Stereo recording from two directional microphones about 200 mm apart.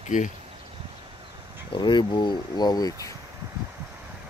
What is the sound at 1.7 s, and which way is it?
Speech, 25° left (ahead or behind).